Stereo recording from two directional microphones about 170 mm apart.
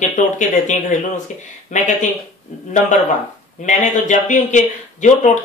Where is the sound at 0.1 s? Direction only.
45° left (ahead or behind).